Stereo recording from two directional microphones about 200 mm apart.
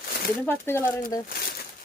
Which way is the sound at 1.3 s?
50° left (ahead or behind).